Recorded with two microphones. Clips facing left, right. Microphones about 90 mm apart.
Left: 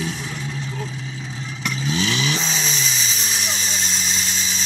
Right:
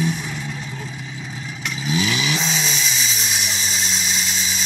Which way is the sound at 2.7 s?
35° left (ahead or behind).